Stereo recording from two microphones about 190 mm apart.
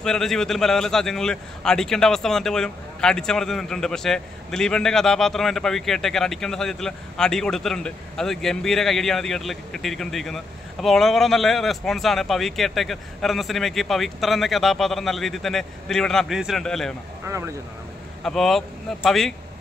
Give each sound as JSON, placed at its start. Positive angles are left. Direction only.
{"t": 0.0, "sound": "a man's voice", "side_deg": 5}
{"t": 17.3, "sound": "speech", "side_deg": -15}
{"t": 18.2, "sound": "a man's voice", "side_deg": 0}